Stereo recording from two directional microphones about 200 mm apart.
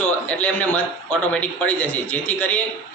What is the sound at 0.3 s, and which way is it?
A man's voice, 5° left (ahead or behind).